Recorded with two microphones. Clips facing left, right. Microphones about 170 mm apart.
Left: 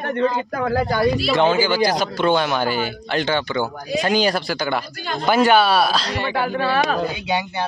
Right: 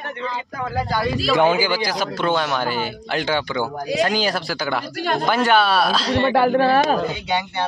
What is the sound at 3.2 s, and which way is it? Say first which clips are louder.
Speech: left 1 dB; 10° right (ahead or behind).